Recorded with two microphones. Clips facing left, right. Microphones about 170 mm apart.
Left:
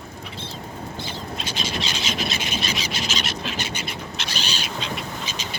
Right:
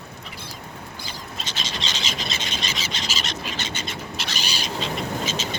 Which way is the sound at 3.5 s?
10° left (ahead or behind).